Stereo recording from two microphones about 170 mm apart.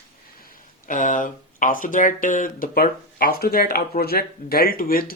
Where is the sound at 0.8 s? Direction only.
50° left (ahead or behind).